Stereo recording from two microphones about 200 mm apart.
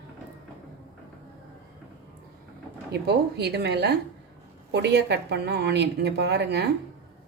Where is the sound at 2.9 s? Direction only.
55° right (ahead or behind).